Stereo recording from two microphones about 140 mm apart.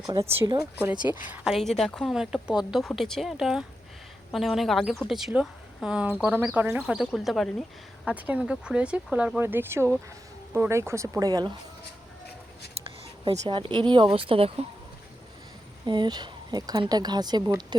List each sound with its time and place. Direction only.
0.6 s speech: 15° right (ahead or behind)
1.3 s a woman's voice: centre (ahead or behind); by 11.5 s 30° right (ahead or behind)
12.7 s speech: 45° right (ahead or behind)
15.9 s a woman's voice: 30° right (ahead or behind)